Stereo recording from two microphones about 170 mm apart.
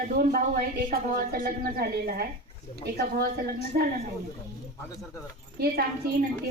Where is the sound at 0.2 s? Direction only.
60° right (ahead or behind).